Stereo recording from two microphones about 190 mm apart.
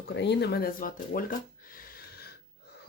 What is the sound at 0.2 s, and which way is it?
Speech, 60° left (ahead or behind).